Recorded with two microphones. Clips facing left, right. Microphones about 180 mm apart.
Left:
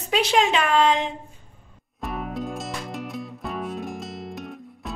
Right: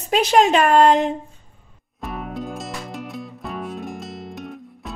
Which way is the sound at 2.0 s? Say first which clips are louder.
Even; centre (ahead or behind).